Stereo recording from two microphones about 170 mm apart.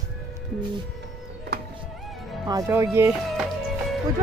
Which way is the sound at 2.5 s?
15° right (ahead or behind).